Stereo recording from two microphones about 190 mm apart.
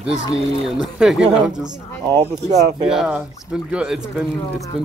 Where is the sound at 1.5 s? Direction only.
20° right (ahead or behind).